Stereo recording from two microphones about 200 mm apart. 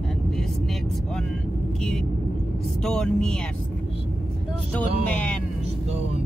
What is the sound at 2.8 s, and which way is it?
Speech, 5° left (ahead or behind).